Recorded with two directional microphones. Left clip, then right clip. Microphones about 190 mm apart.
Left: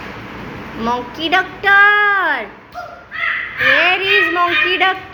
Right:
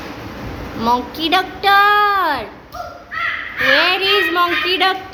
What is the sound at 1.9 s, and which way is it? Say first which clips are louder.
Speech: left 1 dB; 10° right (ahead or behind).